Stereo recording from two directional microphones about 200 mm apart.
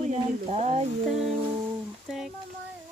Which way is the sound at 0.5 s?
35° right (ahead or behind).